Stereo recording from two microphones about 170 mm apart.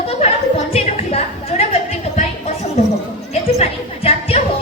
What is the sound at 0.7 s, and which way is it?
Speech, 35° left (ahead or behind).